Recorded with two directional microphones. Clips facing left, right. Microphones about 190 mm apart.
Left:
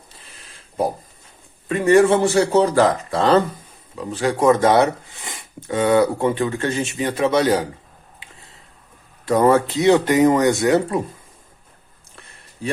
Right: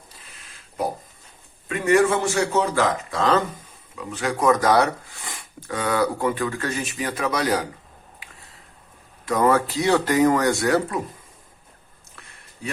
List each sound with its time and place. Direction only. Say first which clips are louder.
1.6 s a man's voice: left 5 dB; 35° left (ahead or behind)
9.2 s speech: left 4 dB; 30° left (ahead or behind)